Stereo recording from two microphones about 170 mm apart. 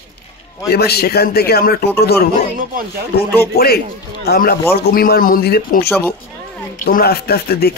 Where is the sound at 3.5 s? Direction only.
65° left (ahead or behind).